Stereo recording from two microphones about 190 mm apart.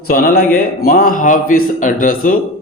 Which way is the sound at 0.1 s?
50° left (ahead or behind).